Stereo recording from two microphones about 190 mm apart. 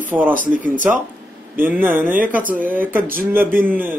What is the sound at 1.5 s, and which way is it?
A man's voice, 10° right (ahead or behind).